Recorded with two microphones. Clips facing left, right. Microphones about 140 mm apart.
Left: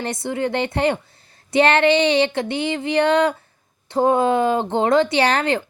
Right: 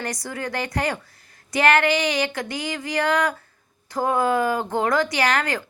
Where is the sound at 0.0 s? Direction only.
25° left (ahead or behind).